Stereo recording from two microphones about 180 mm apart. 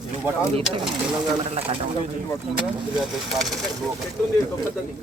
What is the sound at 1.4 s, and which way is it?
Speech, 35° right (ahead or behind).